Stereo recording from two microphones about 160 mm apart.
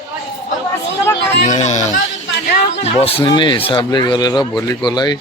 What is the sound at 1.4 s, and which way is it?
Speech, 45° left (ahead or behind).